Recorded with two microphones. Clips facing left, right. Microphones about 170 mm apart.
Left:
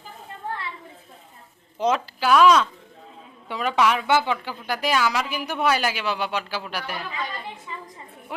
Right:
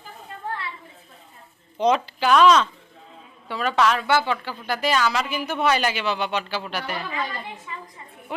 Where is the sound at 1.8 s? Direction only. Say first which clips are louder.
Right 2 dB; 5° left (ahead or behind).